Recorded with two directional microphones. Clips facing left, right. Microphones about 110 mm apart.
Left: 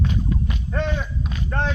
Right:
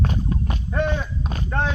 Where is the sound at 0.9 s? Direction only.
35° right (ahead or behind).